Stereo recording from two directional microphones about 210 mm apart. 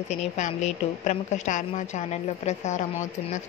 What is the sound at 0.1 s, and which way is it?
A woman's voice, 30° left (ahead or behind).